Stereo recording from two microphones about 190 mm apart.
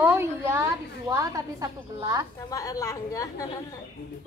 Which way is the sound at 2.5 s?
20° left (ahead or behind).